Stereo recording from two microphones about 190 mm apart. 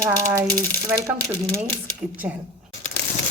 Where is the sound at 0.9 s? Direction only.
5° right (ahead or behind).